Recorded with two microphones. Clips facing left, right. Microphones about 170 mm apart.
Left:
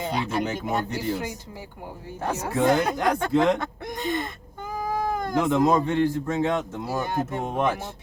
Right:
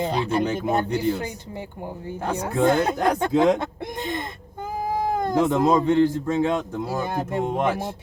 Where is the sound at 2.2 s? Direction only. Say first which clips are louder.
Right 1 dB; 25° right (ahead or behind).